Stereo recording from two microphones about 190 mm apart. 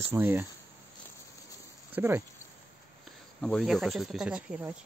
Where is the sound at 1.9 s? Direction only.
10° right (ahead or behind).